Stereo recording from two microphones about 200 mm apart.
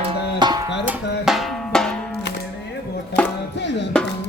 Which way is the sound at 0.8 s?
Centre (ahead or behind).